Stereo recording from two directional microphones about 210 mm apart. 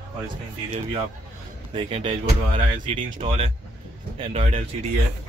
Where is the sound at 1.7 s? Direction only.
25° right (ahead or behind).